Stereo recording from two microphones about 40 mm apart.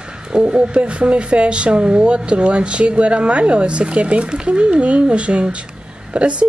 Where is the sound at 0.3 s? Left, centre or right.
Right.